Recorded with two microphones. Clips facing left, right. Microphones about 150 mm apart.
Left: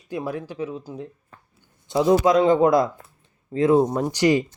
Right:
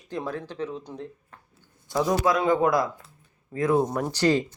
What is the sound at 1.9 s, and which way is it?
A man's voice, 20° left (ahead or behind).